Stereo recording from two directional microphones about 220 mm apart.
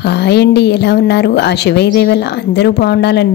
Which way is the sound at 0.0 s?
50° left (ahead or behind).